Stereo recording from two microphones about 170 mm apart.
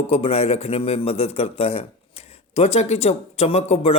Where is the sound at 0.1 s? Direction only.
35° left (ahead or behind).